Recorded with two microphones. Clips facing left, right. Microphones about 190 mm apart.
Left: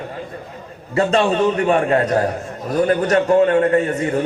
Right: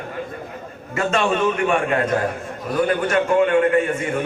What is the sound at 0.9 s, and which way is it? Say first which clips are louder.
A man's voice: left 4 dB; 35° left (ahead or behind).